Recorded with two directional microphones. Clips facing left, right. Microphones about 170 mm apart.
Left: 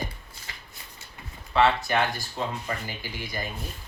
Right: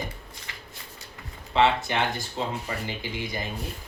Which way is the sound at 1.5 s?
20° right (ahead or behind).